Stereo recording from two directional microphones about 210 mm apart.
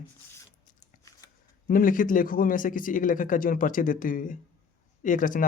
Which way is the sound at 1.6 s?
40° left (ahead or behind).